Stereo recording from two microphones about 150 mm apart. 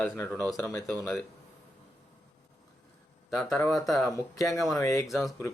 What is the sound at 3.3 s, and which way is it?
Speech, 5° left (ahead or behind).